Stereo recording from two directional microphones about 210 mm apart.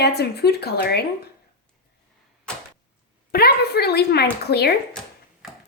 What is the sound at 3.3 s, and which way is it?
A woman's voice, 50° left (ahead or behind).